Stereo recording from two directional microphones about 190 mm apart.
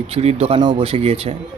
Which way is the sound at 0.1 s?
30° right (ahead or behind).